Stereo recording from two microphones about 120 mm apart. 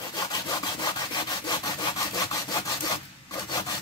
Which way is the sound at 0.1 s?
35° left (ahead or behind).